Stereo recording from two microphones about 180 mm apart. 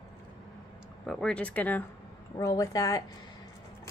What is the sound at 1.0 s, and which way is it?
Speech, 5° left (ahead or behind).